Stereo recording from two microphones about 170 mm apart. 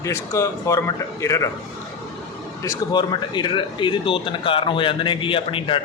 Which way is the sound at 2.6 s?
25° left (ahead or behind).